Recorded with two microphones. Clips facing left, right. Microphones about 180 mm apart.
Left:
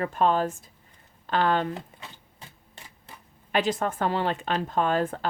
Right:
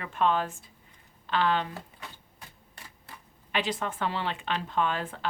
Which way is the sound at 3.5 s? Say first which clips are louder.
Left 5 dB; 45° left (ahead or behind).